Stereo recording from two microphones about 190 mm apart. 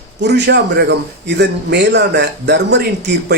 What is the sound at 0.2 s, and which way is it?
A man's voice, 65° right (ahead or behind).